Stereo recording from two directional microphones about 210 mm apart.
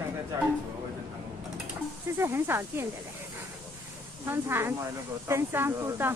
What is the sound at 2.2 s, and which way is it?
Speech, 10° right (ahead or behind).